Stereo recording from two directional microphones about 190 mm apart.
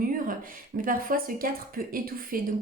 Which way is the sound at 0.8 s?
50° right (ahead or behind).